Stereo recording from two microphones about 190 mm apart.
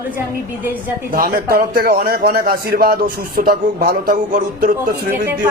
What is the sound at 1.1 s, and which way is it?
A man's voice, 50° right (ahead or behind).